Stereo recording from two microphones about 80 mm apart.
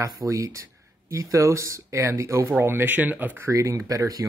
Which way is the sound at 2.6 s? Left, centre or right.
Right.